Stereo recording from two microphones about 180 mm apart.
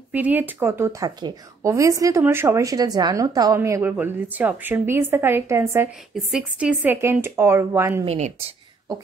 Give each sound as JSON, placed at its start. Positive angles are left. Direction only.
{"t": 0.1, "sound": "a woman's voice", "side_deg": -10}
{"t": 6.1, "sound": "a woman's voice", "side_deg": -5}
{"t": 8.0, "sound": "speech", "side_deg": -35}